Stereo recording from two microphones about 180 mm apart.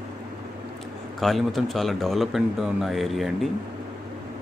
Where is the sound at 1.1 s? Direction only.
Centre (ahead or behind).